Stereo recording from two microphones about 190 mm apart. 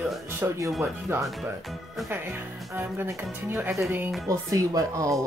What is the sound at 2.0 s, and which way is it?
Speech, 10° right (ahead or behind).